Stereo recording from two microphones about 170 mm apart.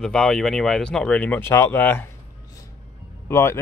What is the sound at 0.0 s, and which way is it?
Speech, 5° left (ahead or behind).